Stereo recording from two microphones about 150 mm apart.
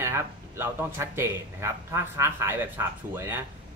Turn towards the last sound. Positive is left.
turn(degrees=-15)  # may be behind; listen again after turning